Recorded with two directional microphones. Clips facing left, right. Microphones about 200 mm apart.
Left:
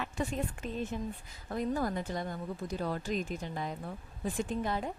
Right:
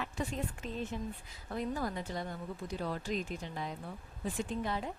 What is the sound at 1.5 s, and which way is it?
A woman's voice, 45° left (ahead or behind).